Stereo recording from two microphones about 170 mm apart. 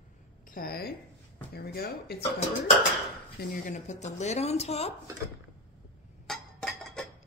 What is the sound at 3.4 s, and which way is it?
Speech, 60° left (ahead or behind).